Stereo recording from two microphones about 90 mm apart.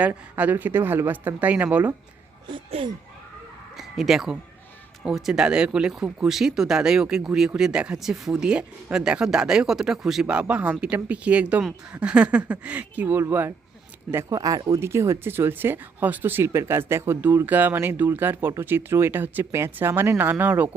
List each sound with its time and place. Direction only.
0.1 s speech: 20° right (ahead or behind)
2.5 s speech: 65° right (ahead or behind)
3.8 s speech: 5° right (ahead or behind); by 14.3 s 30° right (ahead or behind)
14.3 s speech: 40° right (ahead or behind)
14.8 s speech: 30° right (ahead or behind)